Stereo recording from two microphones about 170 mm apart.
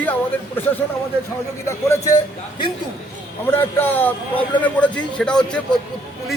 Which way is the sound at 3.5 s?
10° left (ahead or behind).